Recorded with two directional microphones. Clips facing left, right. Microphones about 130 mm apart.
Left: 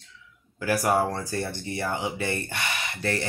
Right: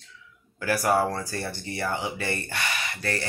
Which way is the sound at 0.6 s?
20° left (ahead or behind).